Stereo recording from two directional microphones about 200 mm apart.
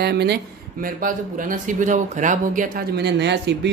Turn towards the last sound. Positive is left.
turn(degrees=-60)  # may be behind; listen again after turning